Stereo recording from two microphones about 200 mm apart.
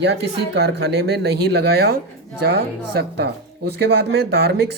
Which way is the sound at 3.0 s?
55° right (ahead or behind).